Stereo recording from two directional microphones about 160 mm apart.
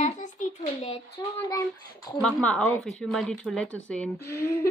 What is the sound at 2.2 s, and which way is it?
Speech, 5° left (ahead or behind).